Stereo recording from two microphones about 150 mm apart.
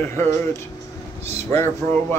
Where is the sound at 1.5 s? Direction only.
15° left (ahead or behind).